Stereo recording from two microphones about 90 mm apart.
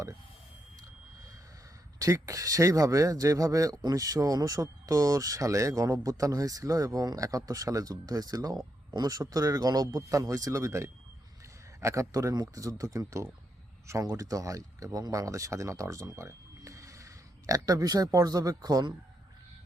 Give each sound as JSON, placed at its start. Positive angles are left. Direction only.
{"t": 2.0, "sound": "speech", "side_deg": -40}